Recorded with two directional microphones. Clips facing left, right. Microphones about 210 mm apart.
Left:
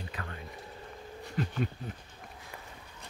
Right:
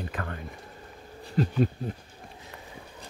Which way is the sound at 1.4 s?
35° right (ahead or behind).